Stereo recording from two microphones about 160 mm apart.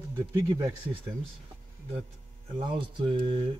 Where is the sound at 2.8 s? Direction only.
30° right (ahead or behind).